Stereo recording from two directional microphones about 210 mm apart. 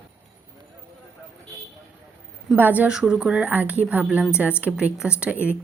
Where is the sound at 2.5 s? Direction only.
10° right (ahead or behind).